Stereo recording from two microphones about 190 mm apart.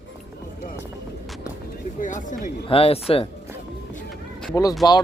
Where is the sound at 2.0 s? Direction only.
40° left (ahead or behind).